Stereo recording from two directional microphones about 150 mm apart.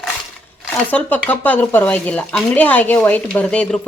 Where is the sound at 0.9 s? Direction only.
10° left (ahead or behind).